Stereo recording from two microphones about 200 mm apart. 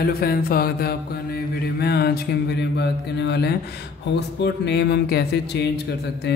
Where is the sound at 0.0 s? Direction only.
50° left (ahead or behind).